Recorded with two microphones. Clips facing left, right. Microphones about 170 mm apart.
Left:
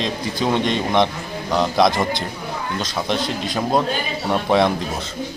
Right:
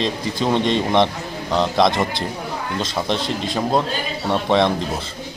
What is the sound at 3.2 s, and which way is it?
Speech, 30° right (ahead or behind).